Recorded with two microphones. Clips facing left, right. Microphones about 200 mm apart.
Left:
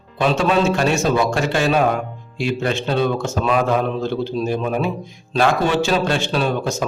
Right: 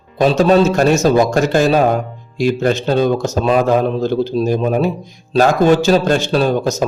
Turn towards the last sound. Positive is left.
turn(degrees=-40)  # may be behind; listen again after turning